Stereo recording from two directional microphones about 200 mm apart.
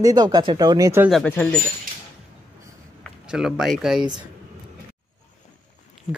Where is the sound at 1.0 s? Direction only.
5° left (ahead or behind).